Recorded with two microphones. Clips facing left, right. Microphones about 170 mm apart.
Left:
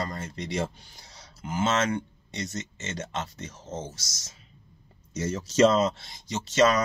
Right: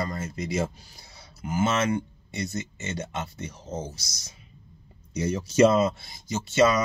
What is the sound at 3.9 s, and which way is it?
Speech, 90° left.